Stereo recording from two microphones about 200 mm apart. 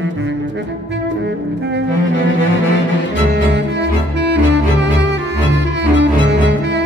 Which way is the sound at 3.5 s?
60° right (ahead or behind).